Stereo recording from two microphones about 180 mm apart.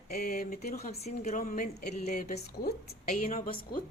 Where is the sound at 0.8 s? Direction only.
35° left (ahead or behind).